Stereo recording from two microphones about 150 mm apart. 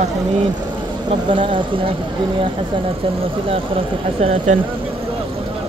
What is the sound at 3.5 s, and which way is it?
Speech, 40° right (ahead or behind).